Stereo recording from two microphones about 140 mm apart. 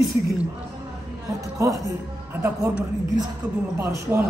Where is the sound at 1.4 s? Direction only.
20° right (ahead or behind).